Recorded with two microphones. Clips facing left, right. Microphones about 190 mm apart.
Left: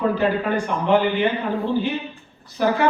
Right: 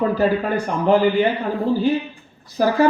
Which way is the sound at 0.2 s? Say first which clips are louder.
Right 2 dB; 40° right (ahead or behind).